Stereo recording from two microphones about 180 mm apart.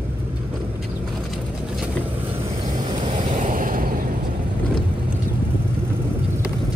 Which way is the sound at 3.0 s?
40° right (ahead or behind).